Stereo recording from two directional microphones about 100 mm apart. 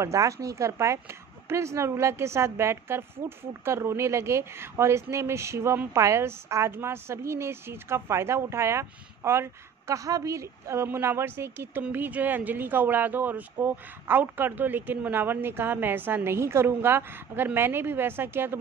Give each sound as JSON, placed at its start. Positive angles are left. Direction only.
{"t": 0.0, "sound": "a woman's voice", "side_deg": -30}